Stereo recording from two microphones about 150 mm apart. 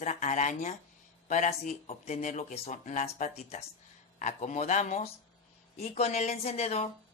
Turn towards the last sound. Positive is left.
turn(degrees=45)  # may be behind; listen again after turning